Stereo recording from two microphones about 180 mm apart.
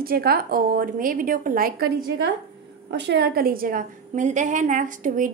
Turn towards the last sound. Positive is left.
turn(degrees=-45)  # may be behind; listen again after turning